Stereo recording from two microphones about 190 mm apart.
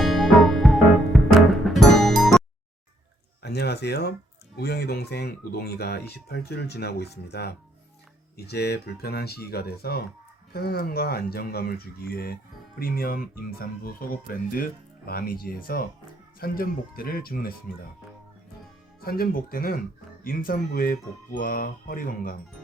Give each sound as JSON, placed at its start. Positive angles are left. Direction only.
{"t": 0.0, "sound": "music", "side_deg": 0}
{"t": 3.4, "sound": "speech", "side_deg": 60}
{"t": 19.0, "sound": "speech", "side_deg": 50}